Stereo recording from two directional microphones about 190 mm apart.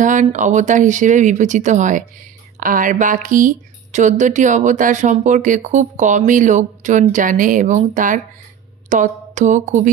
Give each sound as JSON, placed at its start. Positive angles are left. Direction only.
{"t": 0.0, "sound": "a woman's voice", "side_deg": -40}